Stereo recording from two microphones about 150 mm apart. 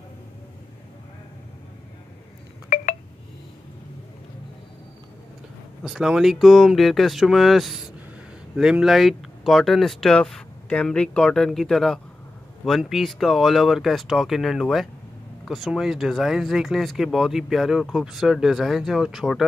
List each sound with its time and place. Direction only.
2.7 s telephone dialing: 55° left (ahead or behind)
5.9 s speech: 5° right (ahead or behind)